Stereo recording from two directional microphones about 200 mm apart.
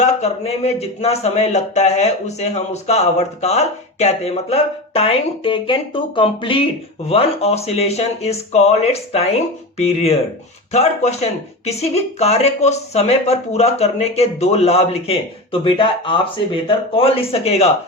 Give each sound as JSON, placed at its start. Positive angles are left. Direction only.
{"t": 0.0, "sound": "speech", "side_deg": 30}